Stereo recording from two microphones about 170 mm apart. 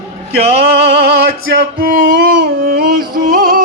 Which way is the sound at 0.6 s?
75° right (ahead or behind).